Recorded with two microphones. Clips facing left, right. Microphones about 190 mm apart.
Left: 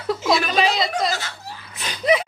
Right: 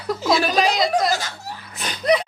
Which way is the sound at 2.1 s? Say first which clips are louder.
Even; 5° left (ahead or behind).